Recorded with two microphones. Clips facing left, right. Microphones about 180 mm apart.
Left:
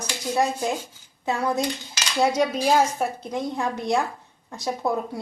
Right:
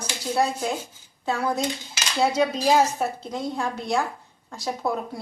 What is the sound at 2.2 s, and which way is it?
A woman's voice, 10° left (ahead or behind).